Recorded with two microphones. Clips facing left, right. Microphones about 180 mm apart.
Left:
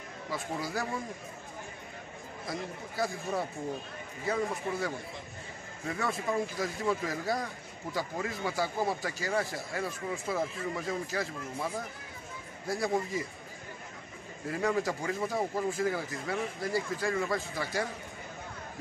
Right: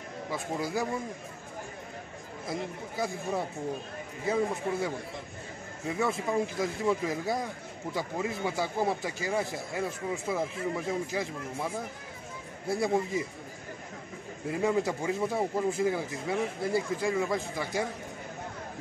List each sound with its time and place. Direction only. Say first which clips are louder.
0.3 s speech: right 3 dB; 20° right (ahead or behind)
4.3 s speech: right 3 dB; 20° right (ahead or behind)
12.6 s speech: right 3 dB; 25° right (ahead or behind)
14.5 s speech: right 2 dB; 20° right (ahead or behind)